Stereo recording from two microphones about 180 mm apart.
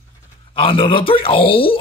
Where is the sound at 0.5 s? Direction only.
30° left (ahead or behind).